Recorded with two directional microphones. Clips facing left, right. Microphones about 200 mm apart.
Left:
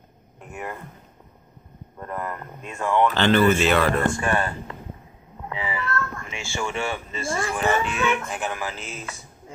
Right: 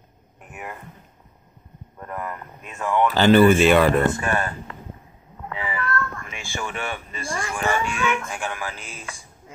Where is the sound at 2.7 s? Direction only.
5° right (ahead or behind); by 4.2 s 20° right (ahead or behind).